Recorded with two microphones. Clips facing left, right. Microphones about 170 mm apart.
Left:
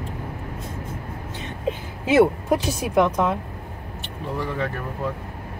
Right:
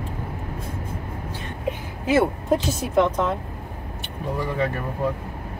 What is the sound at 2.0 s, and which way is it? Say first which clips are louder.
Speech: left 2 dB; 15° left (ahead or behind).